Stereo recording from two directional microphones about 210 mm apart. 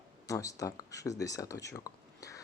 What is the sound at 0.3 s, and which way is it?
Speech, 15° left (ahead or behind).